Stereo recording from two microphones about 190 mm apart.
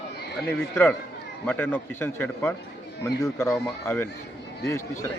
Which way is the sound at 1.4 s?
10° left (ahead or behind).